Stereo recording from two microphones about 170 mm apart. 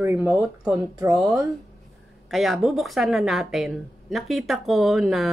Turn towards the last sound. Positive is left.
turn(degrees=0)  # may be behind; listen again after turning